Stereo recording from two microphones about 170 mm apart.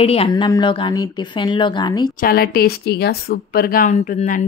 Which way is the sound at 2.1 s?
60° left (ahead or behind).